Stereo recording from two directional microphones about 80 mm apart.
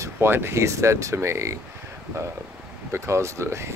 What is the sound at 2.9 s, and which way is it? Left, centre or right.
Speech, right.